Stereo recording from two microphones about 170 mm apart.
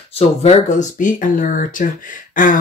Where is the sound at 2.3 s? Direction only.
55° left (ahead or behind).